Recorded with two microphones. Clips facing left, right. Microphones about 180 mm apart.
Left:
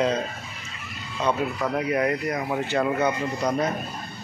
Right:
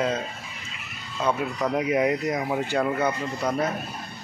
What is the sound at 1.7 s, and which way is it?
Speech, 20° right (ahead or behind).